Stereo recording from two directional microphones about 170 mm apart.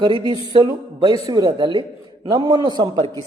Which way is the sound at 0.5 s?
25° right (ahead or behind).